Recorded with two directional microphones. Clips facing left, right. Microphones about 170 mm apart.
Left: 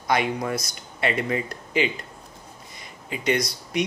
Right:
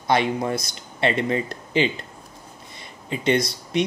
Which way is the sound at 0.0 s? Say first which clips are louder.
Right 3 dB; 25° right (ahead or behind).